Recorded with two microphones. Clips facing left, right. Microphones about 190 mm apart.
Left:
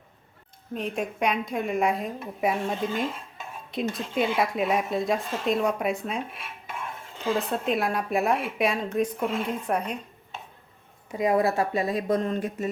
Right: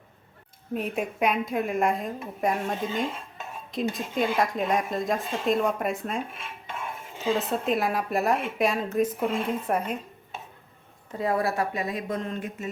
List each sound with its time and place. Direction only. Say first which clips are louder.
0.7 s speech: right 1 dB; 5° right (ahead or behind)
11.1 s speech: left 3 dB; 15° left (ahead or behind); by 12.7 s 35° left (ahead or behind)